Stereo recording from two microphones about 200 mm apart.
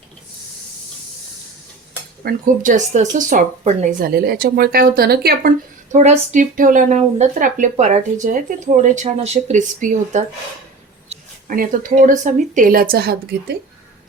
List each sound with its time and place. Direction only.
2.2 s speech: 40° right (ahead or behind)
4.0 s speech: 50° right (ahead or behind)
5.9 s speech: 35° right (ahead or behind); by 13.6 s 50° right (ahead or behind)